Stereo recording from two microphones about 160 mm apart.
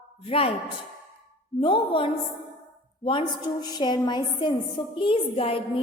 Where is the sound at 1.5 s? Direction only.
30° left (ahead or behind).